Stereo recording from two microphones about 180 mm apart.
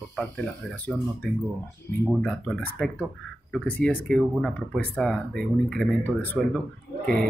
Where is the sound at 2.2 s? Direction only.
5° left (ahead or behind).